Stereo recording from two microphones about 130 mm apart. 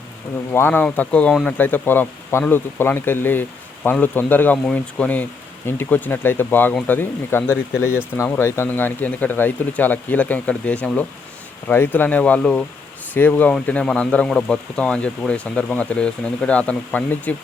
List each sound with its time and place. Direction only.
0.5 s speech: 15° left (ahead or behind)